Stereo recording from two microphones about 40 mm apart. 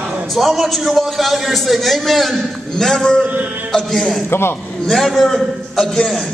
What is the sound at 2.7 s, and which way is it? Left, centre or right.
A man's voice, centre.